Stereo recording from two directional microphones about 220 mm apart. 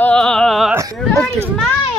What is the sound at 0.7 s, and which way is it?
Speech, 15° right (ahead or behind).